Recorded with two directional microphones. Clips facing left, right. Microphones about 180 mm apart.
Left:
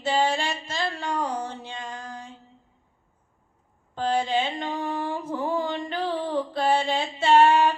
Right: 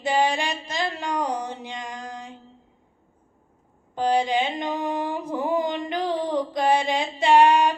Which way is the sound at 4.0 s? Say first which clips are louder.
Right 3 dB; 15° right (ahead or behind).